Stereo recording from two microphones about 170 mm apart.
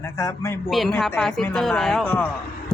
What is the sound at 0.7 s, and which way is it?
Speech, centre (ahead or behind).